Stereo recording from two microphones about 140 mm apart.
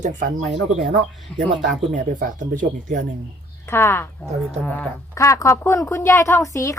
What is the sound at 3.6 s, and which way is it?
Speech, 20° left (ahead or behind).